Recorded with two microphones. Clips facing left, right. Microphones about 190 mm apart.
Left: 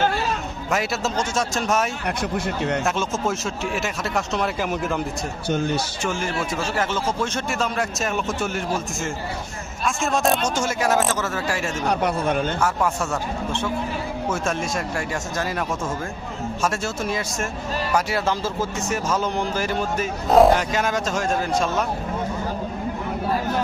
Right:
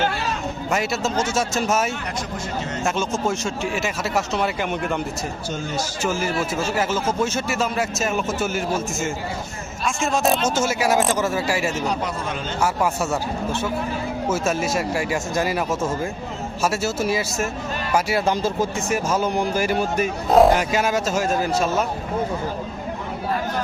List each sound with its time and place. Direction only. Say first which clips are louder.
0.7 s speech: even; centre (ahead or behind)
11.9 s a man's voice: left 4 dB; 60° left (ahead or behind)
12.5 s speech: right 1 dB; 10° right (ahead or behind)
14.3 s speech: right 3 dB; 5° right (ahead or behind)